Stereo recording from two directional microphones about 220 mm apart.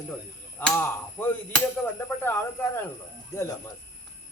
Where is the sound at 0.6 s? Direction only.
10° left (ahead or behind).